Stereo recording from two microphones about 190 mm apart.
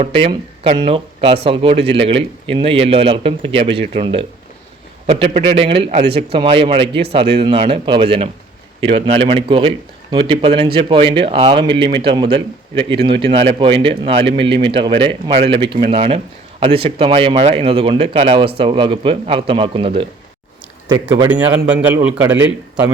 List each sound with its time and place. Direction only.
0.0 s speech: 30° right (ahead or behind)
21.2 s a man's voice: 5° right (ahead or behind)